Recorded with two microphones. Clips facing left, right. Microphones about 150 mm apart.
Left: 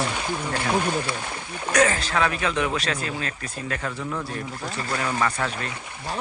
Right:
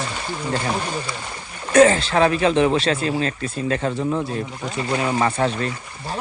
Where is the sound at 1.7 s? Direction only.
30° right (ahead or behind).